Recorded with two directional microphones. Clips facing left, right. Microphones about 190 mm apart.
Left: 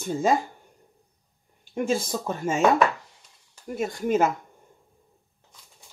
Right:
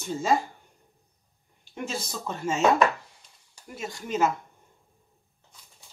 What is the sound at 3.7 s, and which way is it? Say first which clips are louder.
Speech: left 8 dB; 50° left (ahead or behind).